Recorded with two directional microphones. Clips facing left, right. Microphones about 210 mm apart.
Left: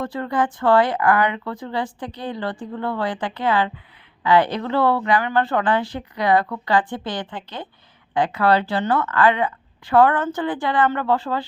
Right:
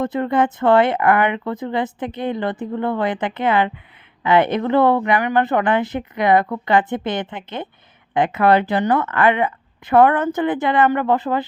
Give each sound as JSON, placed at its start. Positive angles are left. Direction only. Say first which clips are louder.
{"t": 0.0, "sound": "speech", "louder": "right 4 dB", "side_deg": -20}